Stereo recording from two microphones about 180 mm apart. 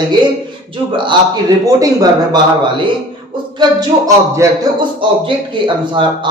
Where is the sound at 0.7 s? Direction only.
25° right (ahead or behind).